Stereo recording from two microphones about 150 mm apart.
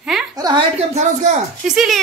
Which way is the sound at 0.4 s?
25° right (ahead or behind).